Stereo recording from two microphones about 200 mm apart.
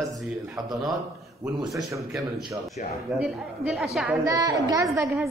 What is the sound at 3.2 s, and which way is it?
Speech, 5° right (ahead or behind).